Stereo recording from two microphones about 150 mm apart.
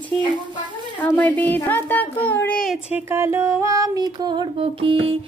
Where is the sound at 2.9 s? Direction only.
15° right (ahead or behind).